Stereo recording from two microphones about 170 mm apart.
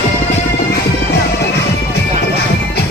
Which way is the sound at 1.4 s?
75° left (ahead or behind).